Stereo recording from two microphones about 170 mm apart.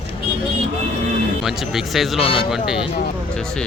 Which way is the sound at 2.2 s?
35° left (ahead or behind).